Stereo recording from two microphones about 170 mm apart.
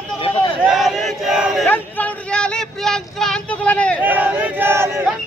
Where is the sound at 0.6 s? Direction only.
Centre (ahead or behind).